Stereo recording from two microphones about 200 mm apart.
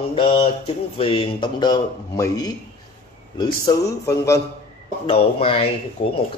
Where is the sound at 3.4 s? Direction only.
15° left (ahead or behind).